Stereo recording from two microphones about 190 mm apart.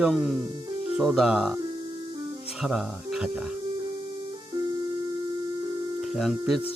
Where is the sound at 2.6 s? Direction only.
Centre (ahead or behind).